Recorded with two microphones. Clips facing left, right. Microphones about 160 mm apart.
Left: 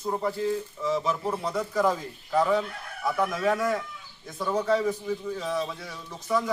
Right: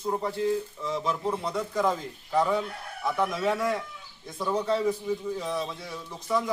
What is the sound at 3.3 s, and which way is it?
Speech, 20° right (ahead or behind).